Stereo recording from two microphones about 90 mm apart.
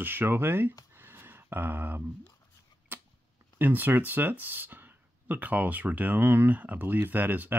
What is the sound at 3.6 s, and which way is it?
Speech, 20° right (ahead or behind).